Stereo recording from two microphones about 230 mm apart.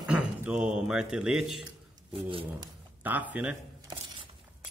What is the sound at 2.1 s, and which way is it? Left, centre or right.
Speech, right.